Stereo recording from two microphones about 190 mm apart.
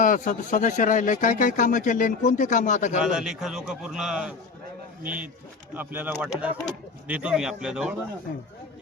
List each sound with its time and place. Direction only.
0.0 s speech: 45° left (ahead or behind)
3.0 s a man's voice: 5° right (ahead or behind)